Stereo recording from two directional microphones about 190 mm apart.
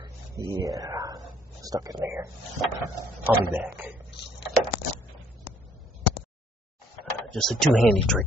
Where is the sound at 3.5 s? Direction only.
10° right (ahead or behind).